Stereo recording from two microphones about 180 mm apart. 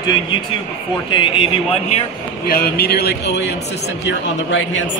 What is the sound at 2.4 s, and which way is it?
Speech, 55° left (ahead or behind).